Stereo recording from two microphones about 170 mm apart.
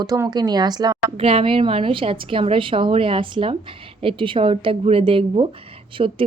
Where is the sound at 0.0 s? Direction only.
20° right (ahead or behind).